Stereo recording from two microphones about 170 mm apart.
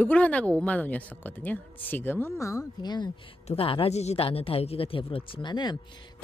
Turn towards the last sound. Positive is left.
turn(degrees=25)  # may be behind; listen again after turning